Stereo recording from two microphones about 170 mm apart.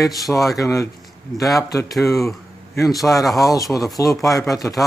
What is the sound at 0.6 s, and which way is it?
Speech, 20° left (ahead or behind).